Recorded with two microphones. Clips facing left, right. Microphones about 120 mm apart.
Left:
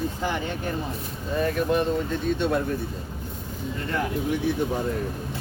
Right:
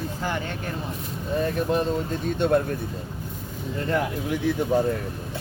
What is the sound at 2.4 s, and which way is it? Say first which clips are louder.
Speech: right 6 dB; 45° right (ahead or behind).